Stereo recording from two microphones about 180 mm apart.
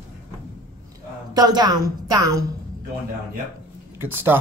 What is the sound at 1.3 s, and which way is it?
A woman's voice, 20° right (ahead or behind).